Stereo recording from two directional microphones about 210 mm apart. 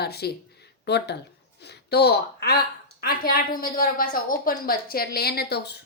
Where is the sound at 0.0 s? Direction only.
50° left (ahead or behind).